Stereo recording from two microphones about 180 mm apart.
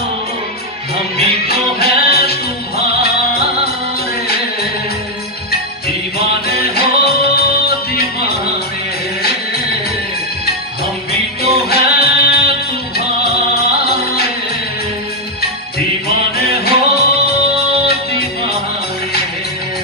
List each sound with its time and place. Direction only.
0.9 s music: 60° left (ahead or behind)
6.1 s music: 60° left (ahead or behind)
11.1 s music: 60° left (ahead or behind)
16.1 s music: 60° left (ahead or behind)